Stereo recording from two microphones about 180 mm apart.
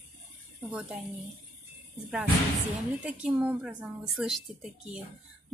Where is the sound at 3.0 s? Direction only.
10° right (ahead or behind).